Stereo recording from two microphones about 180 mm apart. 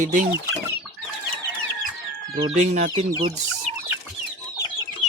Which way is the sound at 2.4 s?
40° right (ahead or behind).